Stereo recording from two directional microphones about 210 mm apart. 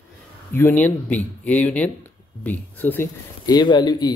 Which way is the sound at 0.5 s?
10° left (ahead or behind).